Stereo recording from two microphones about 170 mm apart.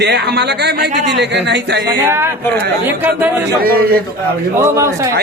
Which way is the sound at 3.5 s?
65° right (ahead or behind).